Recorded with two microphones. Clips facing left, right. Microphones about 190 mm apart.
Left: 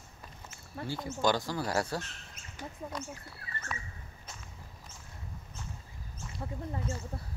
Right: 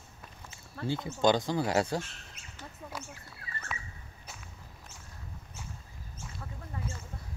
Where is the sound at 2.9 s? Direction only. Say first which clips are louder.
Left 2 dB; 5° right (ahead or behind).